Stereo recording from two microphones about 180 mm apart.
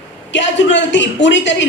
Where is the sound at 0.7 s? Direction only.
85° left.